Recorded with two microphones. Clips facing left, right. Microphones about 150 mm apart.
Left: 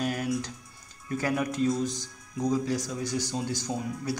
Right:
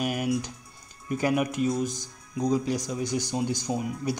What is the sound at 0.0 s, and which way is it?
Speech, 15° right (ahead or behind).